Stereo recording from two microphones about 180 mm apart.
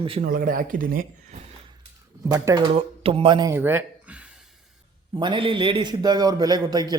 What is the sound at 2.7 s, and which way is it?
Speech, 30° right (ahead or behind).